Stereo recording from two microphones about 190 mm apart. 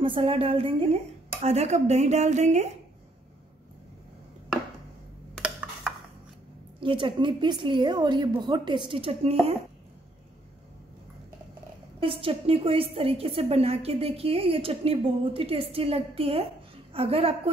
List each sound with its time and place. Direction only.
0.0 s a woman's voice: 30° right (ahead or behind)
5.3 s a sound: centre (ahead or behind)
6.8 s a woman's voice: 25° right (ahead or behind)
12.0 s a woman's voice: 30° right (ahead or behind)